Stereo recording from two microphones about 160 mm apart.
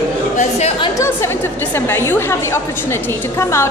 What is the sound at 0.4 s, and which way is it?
Speech, 45° left (ahead or behind).